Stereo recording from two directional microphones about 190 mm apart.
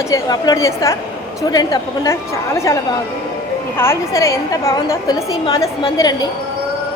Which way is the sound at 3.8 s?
15° left (ahead or behind).